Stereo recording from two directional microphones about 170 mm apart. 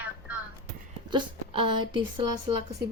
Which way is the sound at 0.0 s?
10° right (ahead or behind).